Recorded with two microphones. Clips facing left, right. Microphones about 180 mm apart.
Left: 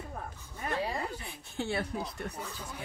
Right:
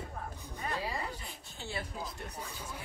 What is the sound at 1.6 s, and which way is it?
Speech, 65° left (ahead or behind).